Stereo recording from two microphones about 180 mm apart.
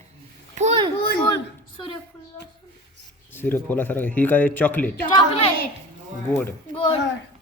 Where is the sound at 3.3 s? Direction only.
10° left (ahead or behind).